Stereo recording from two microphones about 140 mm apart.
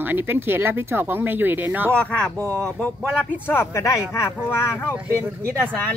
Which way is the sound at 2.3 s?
20° right (ahead or behind).